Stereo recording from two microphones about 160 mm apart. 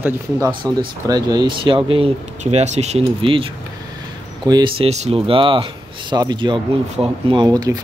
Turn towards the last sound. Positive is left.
turn(degrees=-25)  # may be behind; listen again after turning